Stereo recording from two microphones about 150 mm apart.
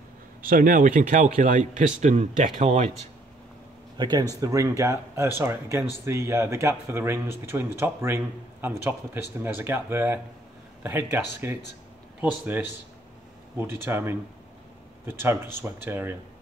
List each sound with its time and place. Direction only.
0.4 s speech: 70° right (ahead or behind); by 2.9 s 50° right (ahead or behind)
4.0 s speech: 30° right (ahead or behind); by 12.6 s 10° right (ahead or behind)
13.8 s speech: 15° right (ahead or behind)